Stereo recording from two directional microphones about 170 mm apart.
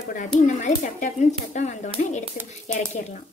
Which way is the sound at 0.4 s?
45° left (ahead or behind).